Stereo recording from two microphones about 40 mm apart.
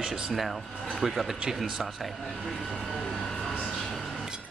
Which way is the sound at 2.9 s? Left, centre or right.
Centre.